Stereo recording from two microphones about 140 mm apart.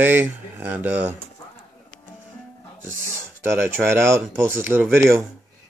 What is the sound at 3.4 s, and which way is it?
Speech, 15° right (ahead or behind).